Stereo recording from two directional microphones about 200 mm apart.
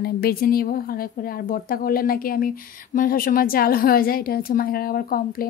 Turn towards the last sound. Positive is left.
turn(degrees=45)  # may be behind; listen again after turning